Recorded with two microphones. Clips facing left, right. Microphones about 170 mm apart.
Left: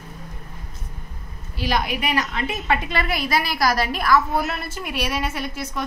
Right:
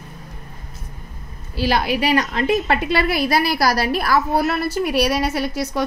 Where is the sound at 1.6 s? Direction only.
30° right (ahead or behind).